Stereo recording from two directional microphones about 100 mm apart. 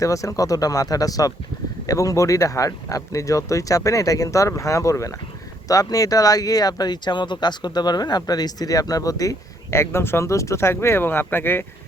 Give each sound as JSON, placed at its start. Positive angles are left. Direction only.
{"t": 0.0, "sound": "speech", "side_deg": 35}